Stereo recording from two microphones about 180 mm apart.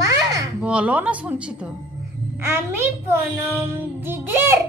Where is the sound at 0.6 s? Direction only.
5° right (ahead or behind).